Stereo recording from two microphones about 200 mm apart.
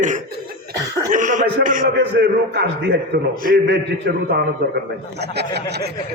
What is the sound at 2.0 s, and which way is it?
A man's voice, 55° right (ahead or behind).